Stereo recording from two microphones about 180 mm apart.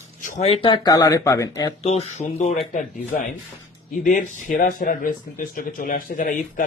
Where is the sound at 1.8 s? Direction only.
35° left (ahead or behind).